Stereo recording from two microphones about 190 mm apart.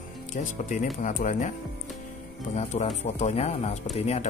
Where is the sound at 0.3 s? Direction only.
45° left (ahead or behind).